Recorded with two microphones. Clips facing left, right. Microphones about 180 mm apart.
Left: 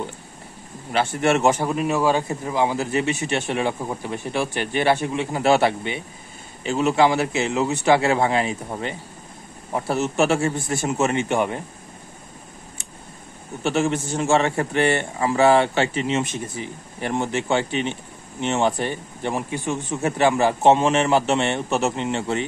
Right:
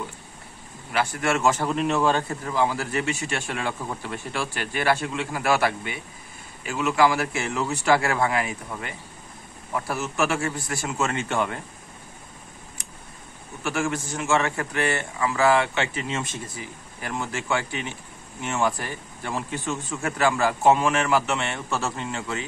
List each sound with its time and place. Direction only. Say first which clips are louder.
0.9 s a man's voice: left 5 dB; 25° left (ahead or behind)
1.7 s a man's voice: left 2 dB; 5° left (ahead or behind)
13.6 s a man's voice: left 5 dB; 25° left (ahead or behind)